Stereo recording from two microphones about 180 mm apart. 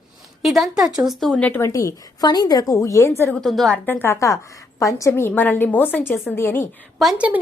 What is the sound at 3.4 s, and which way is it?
A woman's voice, centre (ahead or behind).